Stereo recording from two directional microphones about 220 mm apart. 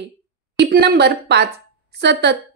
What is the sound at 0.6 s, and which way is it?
A woman's voice, 50° right (ahead or behind).